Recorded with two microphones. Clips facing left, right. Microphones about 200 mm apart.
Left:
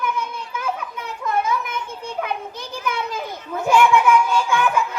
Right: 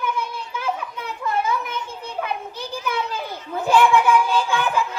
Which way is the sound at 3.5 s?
35° right (ahead or behind).